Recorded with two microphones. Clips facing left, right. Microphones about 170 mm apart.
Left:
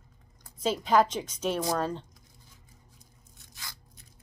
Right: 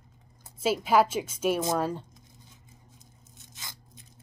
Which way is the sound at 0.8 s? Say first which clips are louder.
Even; 5° right (ahead or behind).